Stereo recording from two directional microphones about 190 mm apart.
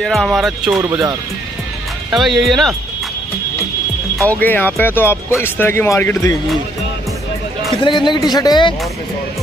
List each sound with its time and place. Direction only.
0.0 s speech: centre (ahead or behind)
0.7 s speech: 15° right (ahead or behind)
2.0 s speech: centre (ahead or behind)
4.3 s speech: 10° left (ahead or behind)
7.7 s speech: 25° left (ahead or behind)